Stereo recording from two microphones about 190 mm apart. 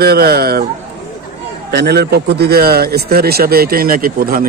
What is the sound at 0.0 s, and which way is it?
Speech, 55° right (ahead or behind).